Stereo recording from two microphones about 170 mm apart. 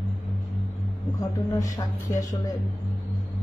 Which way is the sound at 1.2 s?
20° left (ahead or behind).